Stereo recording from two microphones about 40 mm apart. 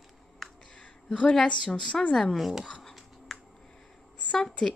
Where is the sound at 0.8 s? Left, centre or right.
Left.